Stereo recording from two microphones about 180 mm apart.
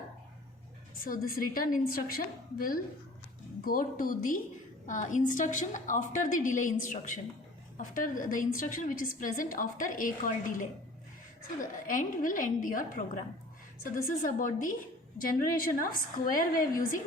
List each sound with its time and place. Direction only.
1.0 s a woman's voice: 55° left (ahead or behind)